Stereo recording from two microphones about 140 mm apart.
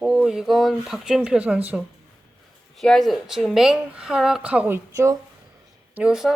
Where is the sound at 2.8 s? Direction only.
Centre (ahead or behind).